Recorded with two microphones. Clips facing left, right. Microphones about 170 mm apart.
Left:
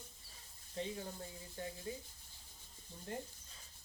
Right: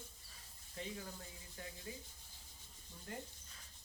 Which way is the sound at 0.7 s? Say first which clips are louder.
Left 4 dB; 30° left (ahead or behind).